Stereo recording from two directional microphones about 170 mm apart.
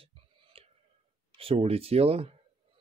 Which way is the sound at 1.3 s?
35° right (ahead or behind).